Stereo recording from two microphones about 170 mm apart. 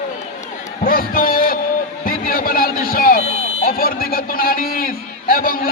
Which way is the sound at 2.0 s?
55° left (ahead or behind).